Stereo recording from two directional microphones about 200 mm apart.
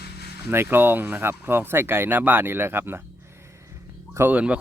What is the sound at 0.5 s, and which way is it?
Speech, 10° right (ahead or behind).